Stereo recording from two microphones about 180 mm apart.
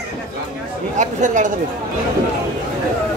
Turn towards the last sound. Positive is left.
turn(degrees=-45)  # may be behind; listen again after turning